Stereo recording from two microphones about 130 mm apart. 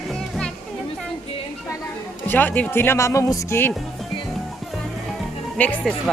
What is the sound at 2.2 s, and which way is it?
Speech, 15° left (ahead or behind).